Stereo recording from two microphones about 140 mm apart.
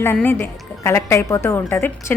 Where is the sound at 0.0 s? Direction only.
15° left (ahead or behind).